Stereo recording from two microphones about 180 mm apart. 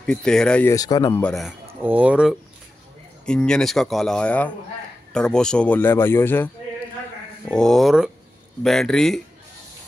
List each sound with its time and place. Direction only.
0.0 s speech: 5° left (ahead or behind)
0.7 s speech: 20° left (ahead or behind)
1.2 s speech: centre (ahead or behind)
3.3 s speech: 5° left (ahead or behind)